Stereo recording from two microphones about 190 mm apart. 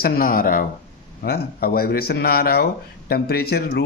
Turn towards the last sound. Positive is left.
turn(degrees=55)  # may be behind; listen again after turning